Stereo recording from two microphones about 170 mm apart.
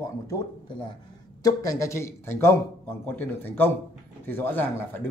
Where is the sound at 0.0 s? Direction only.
25° left (ahead or behind).